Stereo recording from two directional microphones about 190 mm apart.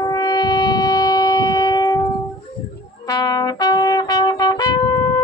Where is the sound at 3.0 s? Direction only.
20° left (ahead or behind).